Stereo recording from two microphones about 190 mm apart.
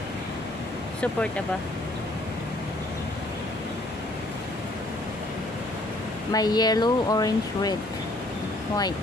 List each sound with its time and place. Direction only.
6.3 s speech: 20° left (ahead or behind)